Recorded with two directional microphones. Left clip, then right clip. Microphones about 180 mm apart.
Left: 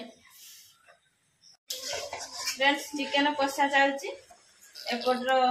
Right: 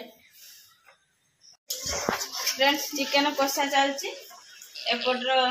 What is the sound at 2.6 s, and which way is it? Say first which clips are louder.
Speech: right 2 dB; 40° right (ahead or behind).